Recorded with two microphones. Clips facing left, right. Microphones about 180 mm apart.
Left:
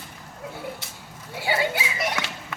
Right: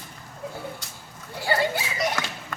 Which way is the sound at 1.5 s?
5° left (ahead or behind).